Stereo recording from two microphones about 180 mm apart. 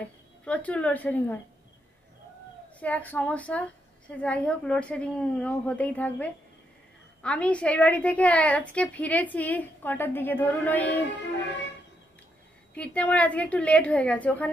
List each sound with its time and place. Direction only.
0.5 s a woman's voice: 5° left (ahead or behind)
2.8 s a woman's voice: 10° left (ahead or behind)
12.7 s a woman's voice: 5° left (ahead or behind)